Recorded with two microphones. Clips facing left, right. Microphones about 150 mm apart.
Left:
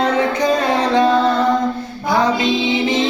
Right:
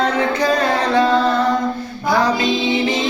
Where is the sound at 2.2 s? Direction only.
20° left (ahead or behind).